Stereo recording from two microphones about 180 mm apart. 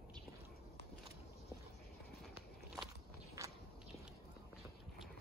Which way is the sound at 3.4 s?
15° right (ahead or behind).